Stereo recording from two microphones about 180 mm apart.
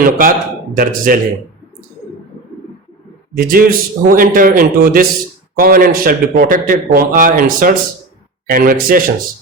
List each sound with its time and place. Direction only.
0.0 s a man's voice: 50° right (ahead or behind)
3.3 s a man's voice: 55° right (ahead or behind)